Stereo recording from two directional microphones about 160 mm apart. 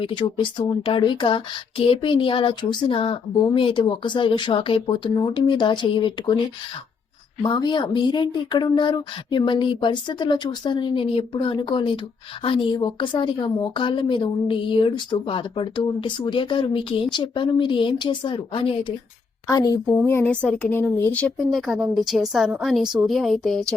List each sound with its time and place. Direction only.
0.0 s a woman's voice: 30° left (ahead or behind)
7.4 s a woman's voice: 30° left (ahead or behind)
19.5 s speech: 25° left (ahead or behind)
20.1 s a woman's voice: 15° left (ahead or behind)